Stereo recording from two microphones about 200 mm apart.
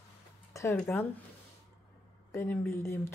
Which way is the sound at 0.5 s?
15° left (ahead or behind).